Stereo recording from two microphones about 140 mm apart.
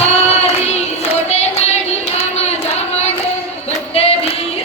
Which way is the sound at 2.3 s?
50° left (ahead or behind).